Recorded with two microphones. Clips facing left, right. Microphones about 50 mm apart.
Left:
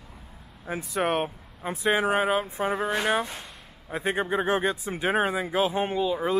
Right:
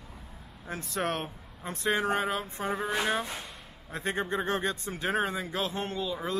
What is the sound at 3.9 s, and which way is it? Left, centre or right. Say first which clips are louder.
Speech: left 5 dB; centre.